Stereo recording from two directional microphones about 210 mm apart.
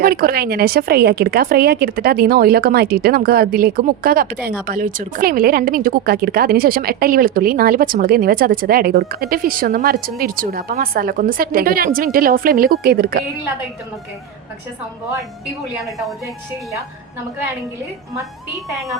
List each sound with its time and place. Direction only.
0.0 s a woman's voice: 45° right (ahead or behind)